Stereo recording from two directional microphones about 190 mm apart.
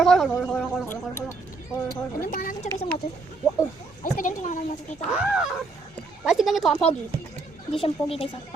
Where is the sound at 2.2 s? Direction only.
45° left (ahead or behind).